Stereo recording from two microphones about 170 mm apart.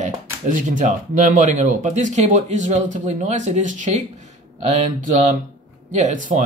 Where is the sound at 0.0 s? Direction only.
50° right (ahead or behind).